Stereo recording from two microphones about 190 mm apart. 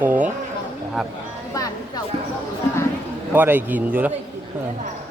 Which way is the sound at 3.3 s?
10° right (ahead or behind).